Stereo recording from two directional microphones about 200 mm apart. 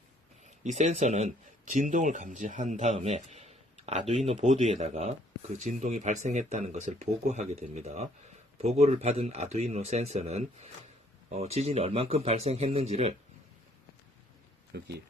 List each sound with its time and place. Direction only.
0.6 s speech: 35° right (ahead or behind)
14.7 s speech: 55° right (ahead or behind)